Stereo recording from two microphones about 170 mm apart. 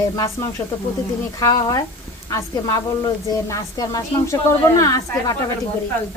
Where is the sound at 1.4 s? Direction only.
20° left (ahead or behind).